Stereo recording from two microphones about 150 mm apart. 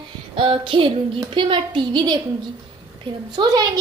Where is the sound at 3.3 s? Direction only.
25° right (ahead or behind).